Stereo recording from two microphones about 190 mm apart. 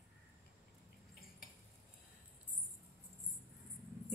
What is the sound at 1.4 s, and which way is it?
Cutlery, 50° left (ahead or behind).